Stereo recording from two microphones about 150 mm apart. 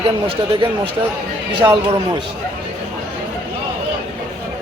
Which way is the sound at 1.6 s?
15° right (ahead or behind).